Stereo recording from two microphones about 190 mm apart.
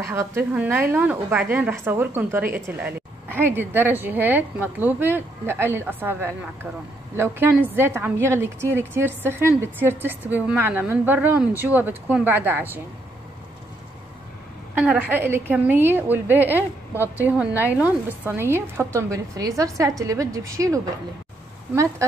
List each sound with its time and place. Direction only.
0.0 s a woman's voice: 15° right (ahead or behind)
14.8 s a woman's voice: 10° right (ahead or behind)